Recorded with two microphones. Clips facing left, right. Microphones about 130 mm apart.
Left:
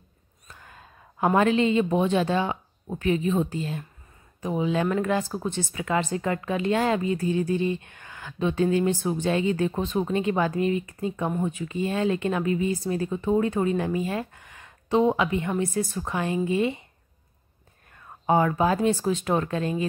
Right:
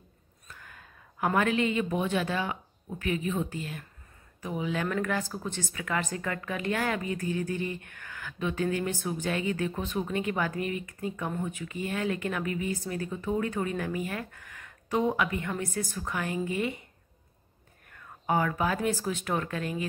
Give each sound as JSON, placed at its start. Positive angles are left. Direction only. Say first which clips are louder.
{"t": 0.5, "sound": "speech", "louder": "left 2 dB", "side_deg": 25}
{"t": 17.9, "sound": "speech", "louder": "left 6 dB", "side_deg": 25}